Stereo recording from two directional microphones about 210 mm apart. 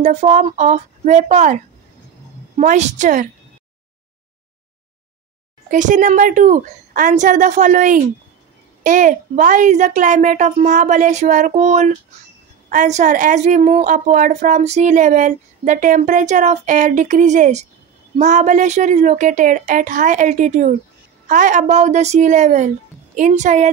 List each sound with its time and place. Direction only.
0.0 s a woman's voice: 35° right (ahead or behind)
5.7 s a woman's voice: 35° right (ahead or behind)